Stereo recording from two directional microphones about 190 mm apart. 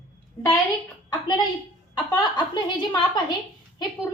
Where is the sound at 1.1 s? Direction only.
20° left (ahead or behind).